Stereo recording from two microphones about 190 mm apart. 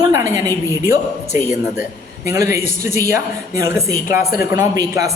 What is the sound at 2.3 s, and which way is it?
A man's voice, 15° right (ahead or behind).